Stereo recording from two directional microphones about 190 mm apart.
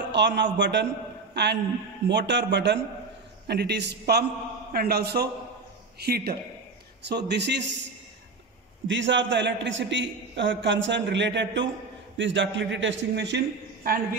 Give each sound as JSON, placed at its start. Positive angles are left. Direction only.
{"t": 0.1, "sound": "a man's voice", "side_deg": -65}
{"t": 8.8, "sound": "a man's voice", "side_deg": -75}